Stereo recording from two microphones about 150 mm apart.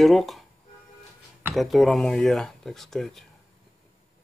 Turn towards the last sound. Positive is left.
turn(degrees=0)  # may be behind; listen again after turning